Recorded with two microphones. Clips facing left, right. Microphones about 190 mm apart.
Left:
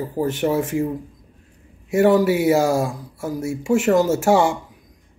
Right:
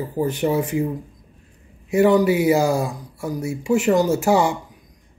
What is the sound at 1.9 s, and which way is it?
Speech, centre (ahead or behind).